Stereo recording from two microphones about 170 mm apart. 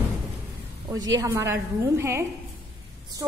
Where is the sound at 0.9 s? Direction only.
20° right (ahead or behind).